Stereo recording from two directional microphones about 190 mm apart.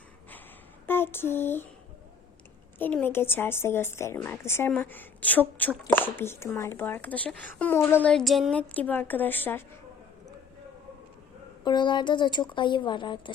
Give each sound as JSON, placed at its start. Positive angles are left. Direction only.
{"t": 0.9, "sound": "a sound", "side_deg": 10}
{"t": 2.7, "sound": "a woman's voice", "side_deg": 10}
{"t": 11.6, "sound": "a woman's voice", "side_deg": 25}